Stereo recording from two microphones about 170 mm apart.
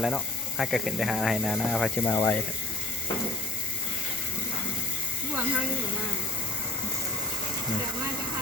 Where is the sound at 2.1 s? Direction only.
20° left (ahead or behind).